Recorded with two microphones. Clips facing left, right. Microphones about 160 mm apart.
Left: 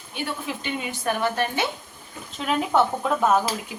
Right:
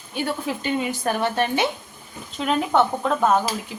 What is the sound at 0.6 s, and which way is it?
A woman's voice, 35° right (ahead or behind).